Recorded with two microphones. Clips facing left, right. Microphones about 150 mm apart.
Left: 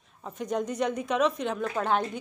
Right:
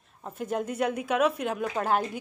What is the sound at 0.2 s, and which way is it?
A woman's voice, 5° right (ahead or behind).